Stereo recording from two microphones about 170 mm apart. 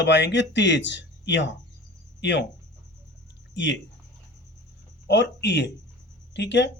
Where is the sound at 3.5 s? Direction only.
90° left.